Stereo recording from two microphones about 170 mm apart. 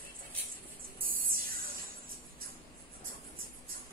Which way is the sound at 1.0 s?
55° right (ahead or behind).